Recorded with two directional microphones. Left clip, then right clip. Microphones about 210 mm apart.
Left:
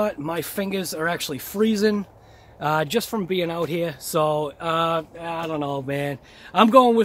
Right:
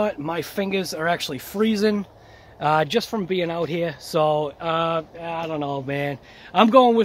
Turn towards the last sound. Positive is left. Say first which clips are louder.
# even
turn(degrees=5)  # may be behind; listen again after turning